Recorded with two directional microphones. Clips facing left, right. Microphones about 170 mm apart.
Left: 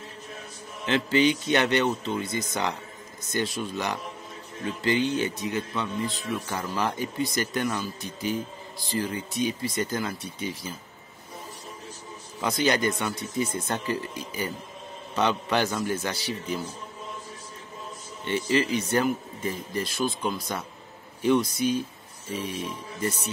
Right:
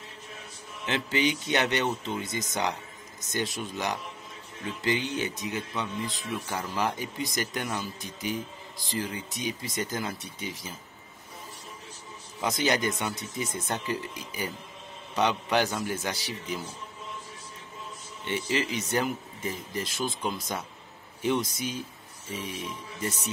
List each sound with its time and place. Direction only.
0.8 s speech: 15° right (ahead or behind)
12.4 s speech: 15° right (ahead or behind)
15.1 s speech: 15° right (ahead or behind)
18.2 s speech: 15° right (ahead or behind)